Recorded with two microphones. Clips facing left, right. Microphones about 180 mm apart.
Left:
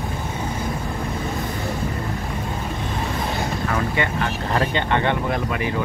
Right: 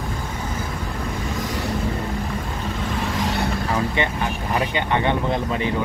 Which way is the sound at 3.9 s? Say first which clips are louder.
Even; 15° right (ahead or behind).